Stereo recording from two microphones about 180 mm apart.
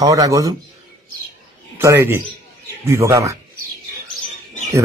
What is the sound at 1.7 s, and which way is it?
A man's voice, 15° right (ahead or behind).